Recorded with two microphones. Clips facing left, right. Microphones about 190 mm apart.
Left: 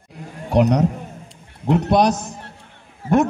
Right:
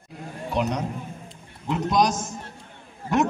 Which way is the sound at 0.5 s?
75° left (ahead or behind).